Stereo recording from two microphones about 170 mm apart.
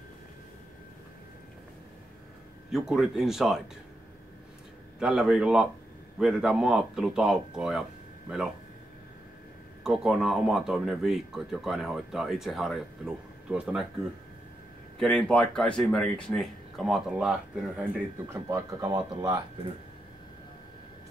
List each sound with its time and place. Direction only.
2.7 s speech: 5° right (ahead or behind)
4.9 s speech: 5° right (ahead or behind)
9.8 s speech: centre (ahead or behind)
15.0 s speech: 5° left (ahead or behind)
18.3 s speech: 20° right (ahead or behind)